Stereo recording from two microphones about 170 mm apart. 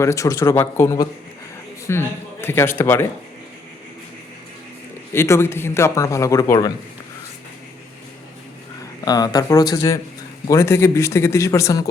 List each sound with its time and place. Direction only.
0.0 s a man's voice: 20° left (ahead or behind)
5.1 s a man's voice: 15° left (ahead or behind)
9.0 s a man's voice: 20° left (ahead or behind)